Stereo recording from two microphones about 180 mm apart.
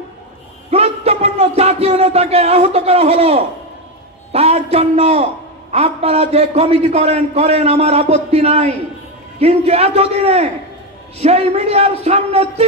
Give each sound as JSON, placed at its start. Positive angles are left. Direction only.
{"t": 0.7, "sound": "a man's voice", "side_deg": -35}